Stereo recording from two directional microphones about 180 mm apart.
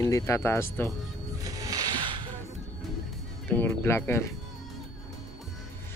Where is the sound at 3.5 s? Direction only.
10° left (ahead or behind).